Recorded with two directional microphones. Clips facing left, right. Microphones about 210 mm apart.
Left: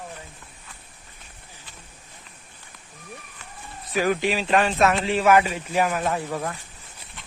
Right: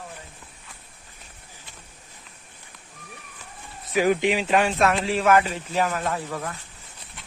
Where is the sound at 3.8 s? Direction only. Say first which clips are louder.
Right 2 dB; 15° right (ahead or behind).